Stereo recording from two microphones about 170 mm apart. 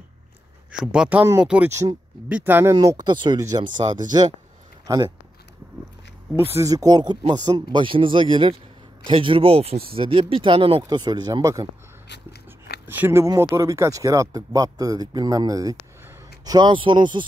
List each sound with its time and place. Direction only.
0.7 s speech: 5° right (ahead or behind); by 4.3 s 25° right (ahead or behind)
6.5 s speech: 20° right (ahead or behind)
12.1 s a sound: 70° left (ahead or behind)
12.8 s speech: 10° right (ahead or behind); by 17.2 s 25° right (ahead or behind)